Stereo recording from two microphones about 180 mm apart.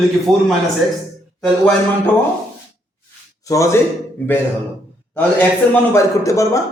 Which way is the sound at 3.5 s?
15° left (ahead or behind).